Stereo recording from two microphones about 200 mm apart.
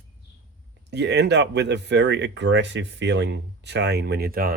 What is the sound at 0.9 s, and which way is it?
Speech, 60° right (ahead or behind).